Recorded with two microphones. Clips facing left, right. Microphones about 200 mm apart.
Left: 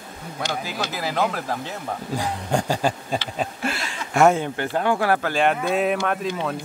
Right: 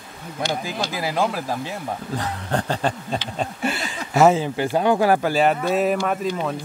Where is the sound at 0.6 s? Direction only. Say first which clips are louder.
Right 2 dB; 15° right (ahead or behind).